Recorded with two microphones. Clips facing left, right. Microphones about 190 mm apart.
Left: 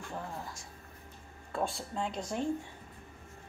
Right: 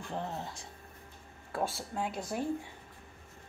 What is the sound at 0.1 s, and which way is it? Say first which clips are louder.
Speech: right 4 dB; 25° right (ahead or behind).